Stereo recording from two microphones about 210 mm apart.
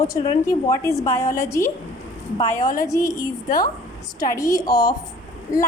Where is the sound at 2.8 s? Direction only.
15° left (ahead or behind).